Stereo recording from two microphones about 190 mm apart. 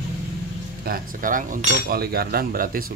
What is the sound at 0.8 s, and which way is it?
A man's voice, 50° right (ahead or behind).